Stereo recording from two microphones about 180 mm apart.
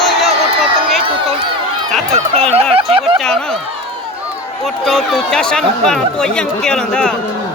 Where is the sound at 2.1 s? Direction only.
35° right (ahead or behind).